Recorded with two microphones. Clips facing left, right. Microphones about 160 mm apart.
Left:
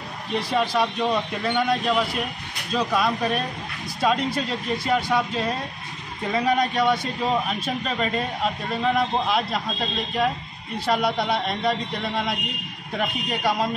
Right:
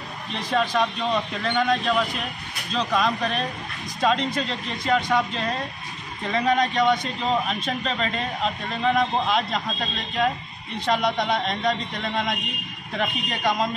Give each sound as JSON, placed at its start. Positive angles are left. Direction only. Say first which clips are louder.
{"t": 0.3, "sound": "a man's voice", "louder": "left 1 dB", "side_deg": 10}